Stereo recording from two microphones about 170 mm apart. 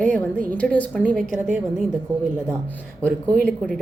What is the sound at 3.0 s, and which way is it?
Speech, 10° left (ahead or behind).